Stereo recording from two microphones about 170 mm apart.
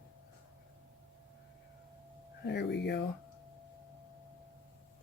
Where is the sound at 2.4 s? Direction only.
85° left.